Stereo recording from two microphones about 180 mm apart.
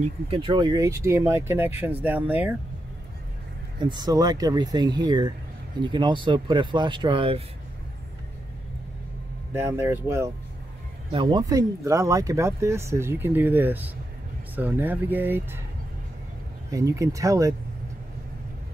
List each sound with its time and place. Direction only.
0.0 s speech: 30° right (ahead or behind); by 2.5 s 10° right (ahead or behind)
3.8 s speech: 25° right (ahead or behind)
9.5 s speech: 15° right (ahead or behind)
11.1 s speech: 25° right (ahead or behind)
16.7 s speech: 20° right (ahead or behind)